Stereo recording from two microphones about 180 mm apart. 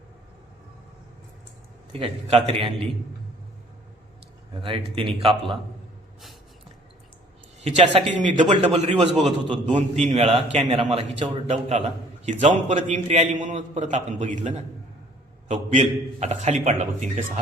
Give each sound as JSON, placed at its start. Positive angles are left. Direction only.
{"t": 1.9, "sound": "a man's voice", "side_deg": -35}
{"t": 4.6, "sound": "a man's voice", "side_deg": -30}
{"t": 7.6, "sound": "a man's voice", "side_deg": -35}